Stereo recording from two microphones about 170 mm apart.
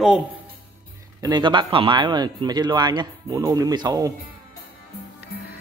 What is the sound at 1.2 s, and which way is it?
Speech, 25° right (ahead or behind).